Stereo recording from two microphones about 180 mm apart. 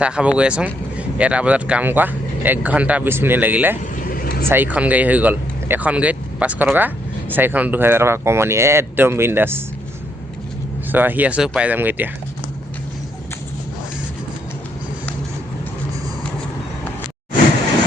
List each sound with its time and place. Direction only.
0.0 s speech: 5° right (ahead or behind)
3.9 s vehicle: 50° left (ahead or behind)
4.4 s speech: 10° right (ahead or behind)
10.9 s speech: 10° right (ahead or behind)